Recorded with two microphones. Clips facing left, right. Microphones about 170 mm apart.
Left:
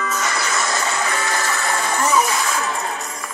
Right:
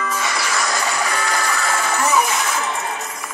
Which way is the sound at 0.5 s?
25° left (ahead or behind).